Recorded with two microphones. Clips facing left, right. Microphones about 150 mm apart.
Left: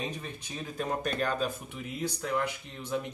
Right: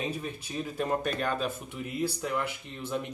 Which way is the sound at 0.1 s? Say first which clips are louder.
Right 4 dB; 10° right (ahead or behind).